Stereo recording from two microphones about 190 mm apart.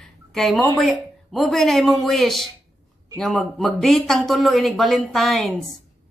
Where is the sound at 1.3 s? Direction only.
Centre (ahead or behind).